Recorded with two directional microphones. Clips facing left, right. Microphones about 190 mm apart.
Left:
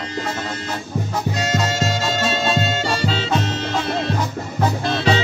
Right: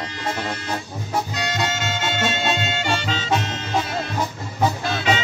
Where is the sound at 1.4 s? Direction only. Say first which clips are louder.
Left 4 dB; 30° left (ahead or behind).